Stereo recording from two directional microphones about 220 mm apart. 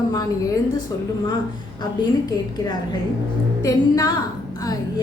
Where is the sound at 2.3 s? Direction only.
20° left (ahead or behind).